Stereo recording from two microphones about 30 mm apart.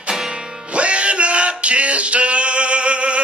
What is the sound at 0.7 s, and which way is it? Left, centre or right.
Male singing, right.